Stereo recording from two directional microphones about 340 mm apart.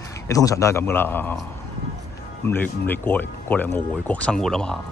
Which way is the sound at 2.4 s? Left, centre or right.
Centre.